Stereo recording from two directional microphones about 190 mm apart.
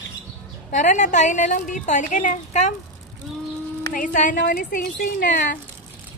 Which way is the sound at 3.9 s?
45° left (ahead or behind).